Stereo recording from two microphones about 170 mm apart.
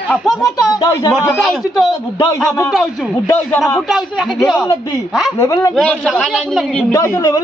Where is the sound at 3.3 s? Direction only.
15° left (ahead or behind).